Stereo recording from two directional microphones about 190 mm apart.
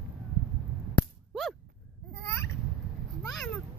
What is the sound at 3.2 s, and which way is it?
Cat, centre (ahead or behind).